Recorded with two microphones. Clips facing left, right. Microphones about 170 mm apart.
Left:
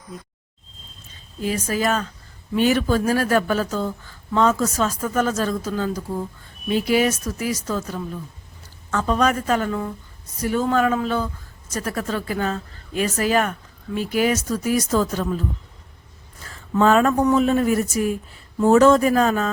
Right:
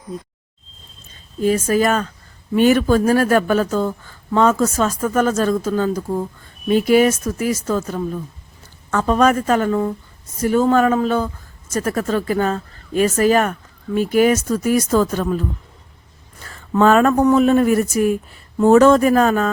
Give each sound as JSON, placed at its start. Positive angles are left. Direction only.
{"t": 1.5, "sound": "a woman's voice", "side_deg": -50}
{"t": 16.7, "sound": "speech", "side_deg": -60}